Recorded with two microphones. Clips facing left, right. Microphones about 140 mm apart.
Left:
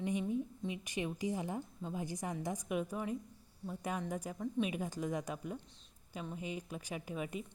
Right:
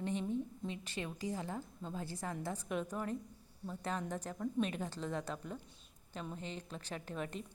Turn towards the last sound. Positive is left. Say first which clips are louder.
# left 2 dB
turn(degrees=10)  # may be behind; listen again after turning